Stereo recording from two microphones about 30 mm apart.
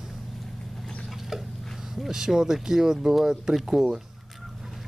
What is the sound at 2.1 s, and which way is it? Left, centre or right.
Speech, centre.